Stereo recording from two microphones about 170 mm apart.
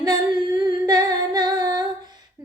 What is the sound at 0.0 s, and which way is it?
Humming, 20° right (ahead or behind).